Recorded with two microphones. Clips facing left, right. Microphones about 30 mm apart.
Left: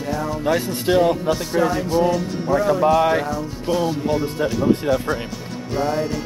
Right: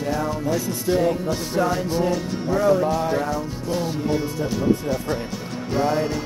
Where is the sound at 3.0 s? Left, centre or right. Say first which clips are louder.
Left 4 dB; left.